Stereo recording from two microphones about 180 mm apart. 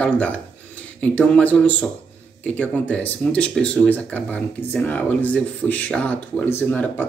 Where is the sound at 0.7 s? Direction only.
5° left (ahead or behind).